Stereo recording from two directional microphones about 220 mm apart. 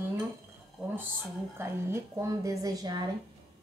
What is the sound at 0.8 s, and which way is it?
Speech, 5° left (ahead or behind).